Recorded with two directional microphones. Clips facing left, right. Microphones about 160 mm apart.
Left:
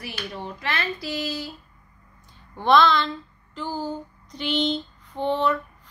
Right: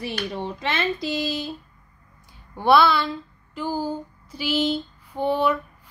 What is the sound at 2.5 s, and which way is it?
A woman's voice, 10° right (ahead or behind).